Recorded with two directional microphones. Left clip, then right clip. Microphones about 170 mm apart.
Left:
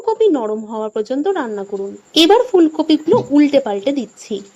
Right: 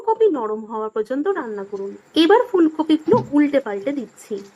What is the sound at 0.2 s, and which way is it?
Speech, 20° left (ahead or behind).